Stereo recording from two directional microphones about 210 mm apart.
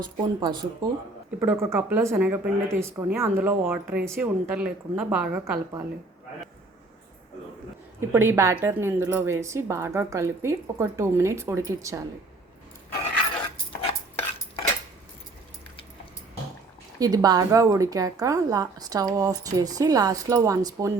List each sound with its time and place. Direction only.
0.0 s speech: 20° right (ahead or behind)
8.1 s speech: 10° right (ahead or behind)
17.0 s speech: 15° right (ahead or behind)